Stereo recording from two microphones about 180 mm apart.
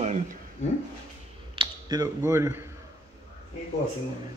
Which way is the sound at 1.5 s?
25° right (ahead or behind).